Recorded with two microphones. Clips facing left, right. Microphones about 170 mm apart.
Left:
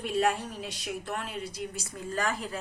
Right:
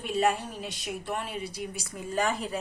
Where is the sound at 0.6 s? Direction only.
55° right (ahead or behind).